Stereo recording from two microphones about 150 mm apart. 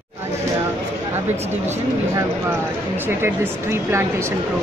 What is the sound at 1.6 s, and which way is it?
Speech, 15° right (ahead or behind).